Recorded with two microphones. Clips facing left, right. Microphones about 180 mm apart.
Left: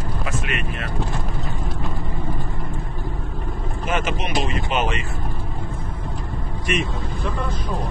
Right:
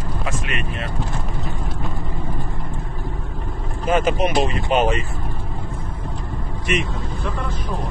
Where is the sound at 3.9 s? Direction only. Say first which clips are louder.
Right 6 dB; 35° right (ahead or behind).